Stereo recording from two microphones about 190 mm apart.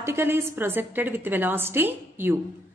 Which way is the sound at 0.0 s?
10° right (ahead or behind).